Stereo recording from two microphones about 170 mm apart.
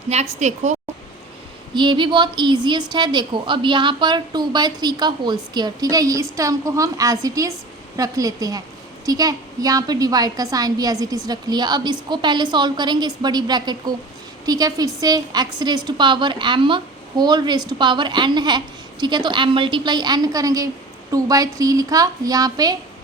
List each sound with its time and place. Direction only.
0.1 s a woman's voice: 40° right (ahead or behind)
1.7 s a woman's voice: 25° right (ahead or behind)